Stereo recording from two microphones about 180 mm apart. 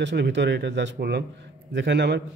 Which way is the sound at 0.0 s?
75° right (ahead or behind).